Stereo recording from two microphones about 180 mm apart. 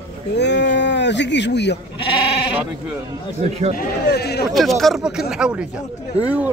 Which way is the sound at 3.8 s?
65° left (ahead or behind).